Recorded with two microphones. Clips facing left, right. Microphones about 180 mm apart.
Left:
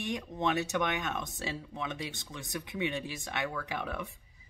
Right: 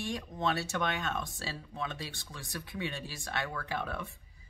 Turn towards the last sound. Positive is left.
turn(degrees=15)  # may be behind; listen again after turning